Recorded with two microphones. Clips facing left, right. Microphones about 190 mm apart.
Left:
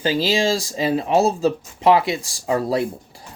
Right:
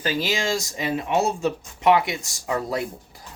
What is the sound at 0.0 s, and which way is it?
Speech, 30° left (ahead or behind).